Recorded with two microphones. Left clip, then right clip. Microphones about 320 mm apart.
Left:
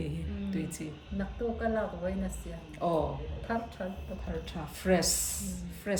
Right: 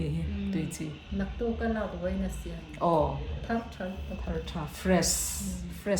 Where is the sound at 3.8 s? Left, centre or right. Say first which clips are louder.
Right 1 dB; centre.